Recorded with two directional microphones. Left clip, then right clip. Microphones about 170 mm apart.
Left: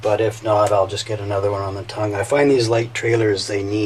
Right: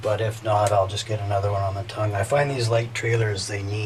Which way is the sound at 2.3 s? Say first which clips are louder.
Left 7 dB; 20° left (ahead or behind).